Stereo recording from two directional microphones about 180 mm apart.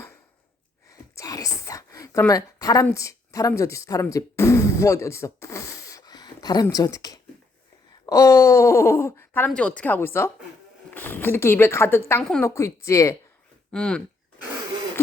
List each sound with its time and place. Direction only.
0.9 s whispering: 20° left (ahead or behind)
2.8 s speech: 15° left (ahead or behind)
13.7 s speech: 5° left (ahead or behind)